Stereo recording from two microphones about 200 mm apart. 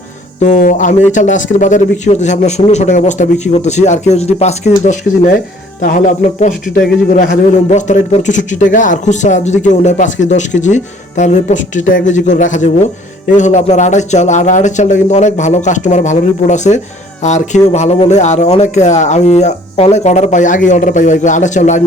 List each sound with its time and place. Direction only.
0.4 s a man's voice: 40° left (ahead or behind)
7.1 s a man's voice: 40° left (ahead or behind)